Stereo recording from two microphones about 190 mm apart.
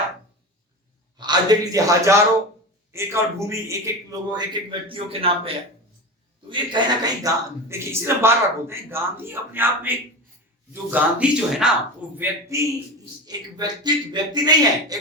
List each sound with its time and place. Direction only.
1.1 s a man's voice: 20° right (ahead or behind)
6.5 s a man's voice: 25° right (ahead or behind)